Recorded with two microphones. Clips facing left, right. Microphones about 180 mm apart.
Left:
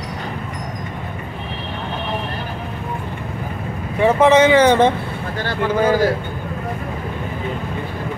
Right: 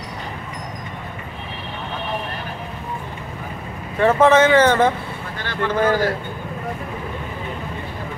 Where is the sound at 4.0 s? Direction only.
15° left (ahead or behind).